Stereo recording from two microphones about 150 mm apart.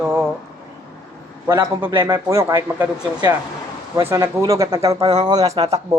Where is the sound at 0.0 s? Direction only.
10° right (ahead or behind).